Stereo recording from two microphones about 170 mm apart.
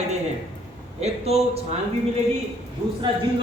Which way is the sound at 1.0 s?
40° right (ahead or behind).